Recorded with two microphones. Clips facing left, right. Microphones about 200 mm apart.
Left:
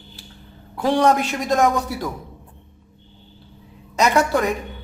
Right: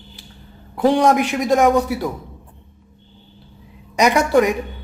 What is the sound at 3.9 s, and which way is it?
Speech, 15° right (ahead or behind).